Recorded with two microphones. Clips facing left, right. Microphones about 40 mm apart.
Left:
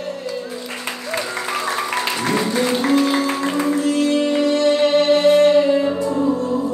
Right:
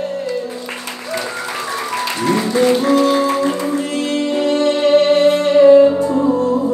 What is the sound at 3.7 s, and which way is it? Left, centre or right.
Music, right.